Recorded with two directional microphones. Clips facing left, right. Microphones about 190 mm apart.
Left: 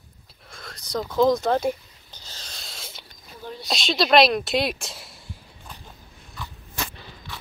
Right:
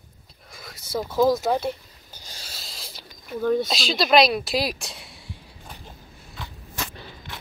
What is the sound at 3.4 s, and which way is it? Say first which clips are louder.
Speech: right 15 dB; 50° right (ahead or behind).